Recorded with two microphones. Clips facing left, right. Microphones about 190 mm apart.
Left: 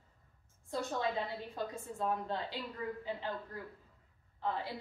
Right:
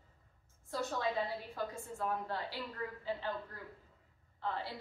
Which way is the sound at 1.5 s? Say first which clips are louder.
Left 1 dB; 20° left (ahead or behind).